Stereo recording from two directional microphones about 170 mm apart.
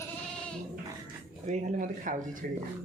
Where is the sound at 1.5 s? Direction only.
50° right (ahead or behind).